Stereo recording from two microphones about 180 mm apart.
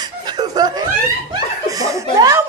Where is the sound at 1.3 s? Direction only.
20° right (ahead or behind).